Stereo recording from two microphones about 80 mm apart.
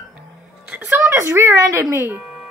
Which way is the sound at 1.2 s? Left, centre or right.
Right.